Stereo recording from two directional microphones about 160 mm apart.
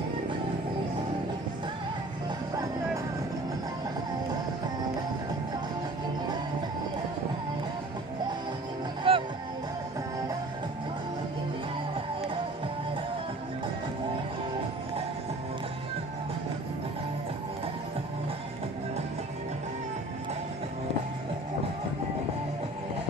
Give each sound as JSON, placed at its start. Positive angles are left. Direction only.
{"t": 2.5, "sound": "music", "side_deg": -25}
{"t": 9.1, "sound": "music", "side_deg": -35}